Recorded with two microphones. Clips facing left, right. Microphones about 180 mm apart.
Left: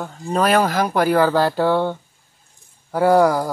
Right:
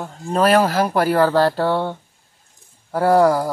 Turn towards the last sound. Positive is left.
turn(degrees=0)  # may be behind; listen again after turning